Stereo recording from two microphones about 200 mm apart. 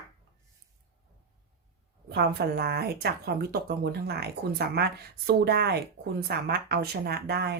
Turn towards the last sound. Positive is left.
turn(degrees=-55)  # may be behind; listen again after turning